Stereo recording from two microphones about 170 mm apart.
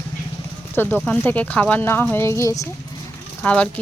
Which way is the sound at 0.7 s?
10° left (ahead or behind).